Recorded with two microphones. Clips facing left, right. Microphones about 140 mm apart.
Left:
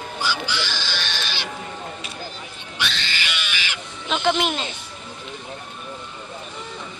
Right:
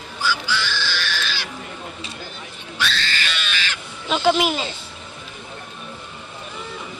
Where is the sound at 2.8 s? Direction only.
15° left (ahead or behind).